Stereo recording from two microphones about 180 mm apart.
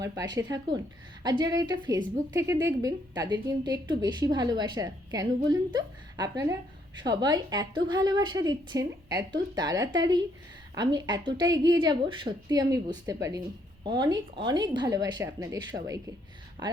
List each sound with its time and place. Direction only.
0.3 s a woman's voice: 20° right (ahead or behind)